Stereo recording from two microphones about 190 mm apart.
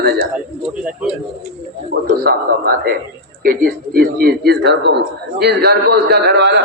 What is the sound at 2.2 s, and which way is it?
A man's voice, 50° right (ahead or behind).